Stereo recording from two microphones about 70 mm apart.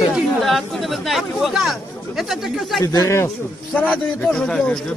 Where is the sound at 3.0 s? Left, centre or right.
Left.